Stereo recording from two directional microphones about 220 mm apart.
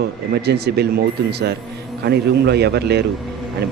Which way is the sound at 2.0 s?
45° right (ahead or behind).